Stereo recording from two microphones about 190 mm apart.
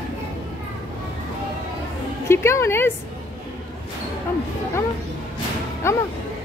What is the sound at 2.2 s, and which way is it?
Speech, 15° left (ahead or behind).